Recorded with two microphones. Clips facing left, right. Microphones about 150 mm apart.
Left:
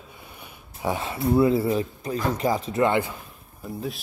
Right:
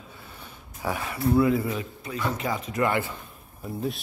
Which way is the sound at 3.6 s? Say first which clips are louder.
Right 1 dB; centre (ahead or behind).